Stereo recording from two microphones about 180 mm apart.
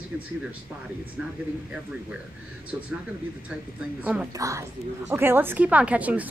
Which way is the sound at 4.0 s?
10° right (ahead or behind).